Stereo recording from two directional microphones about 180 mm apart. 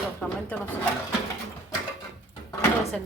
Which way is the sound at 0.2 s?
10° left (ahead or behind).